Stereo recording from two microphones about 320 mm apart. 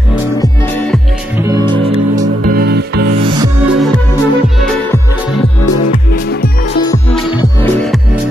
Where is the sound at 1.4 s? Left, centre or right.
Centre.